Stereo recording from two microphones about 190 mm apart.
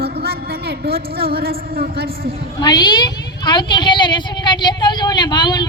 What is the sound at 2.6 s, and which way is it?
A woman's voice, 20° left (ahead or behind).